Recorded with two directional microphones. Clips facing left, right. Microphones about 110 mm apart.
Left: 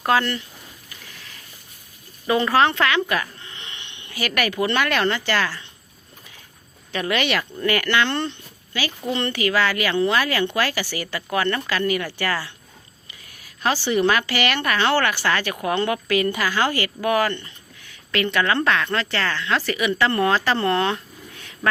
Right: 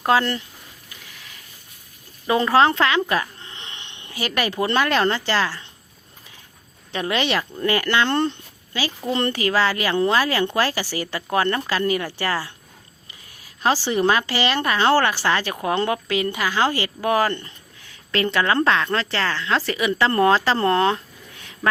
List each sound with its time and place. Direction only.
0.0 s a woman's voice: 25° right (ahead or behind)
2.2 s a sound: 25° right (ahead or behind)
4.3 s a woman's voice: 25° right (ahead or behind)
6.9 s a woman's voice: 25° right (ahead or behind)
13.6 s a woman's voice: 30° right (ahead or behind)